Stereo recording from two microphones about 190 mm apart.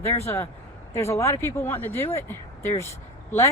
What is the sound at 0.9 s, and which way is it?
Speech, 15° left (ahead or behind).